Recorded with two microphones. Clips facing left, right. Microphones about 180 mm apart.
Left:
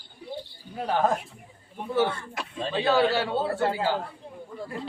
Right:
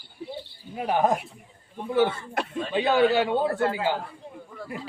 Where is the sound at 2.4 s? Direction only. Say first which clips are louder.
Right 7 dB; 60° right (ahead or behind).